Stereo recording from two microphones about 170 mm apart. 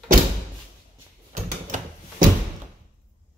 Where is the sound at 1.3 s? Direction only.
50° right (ahead or behind).